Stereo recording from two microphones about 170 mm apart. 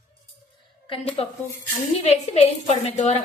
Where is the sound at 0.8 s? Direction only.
30° left (ahead or behind).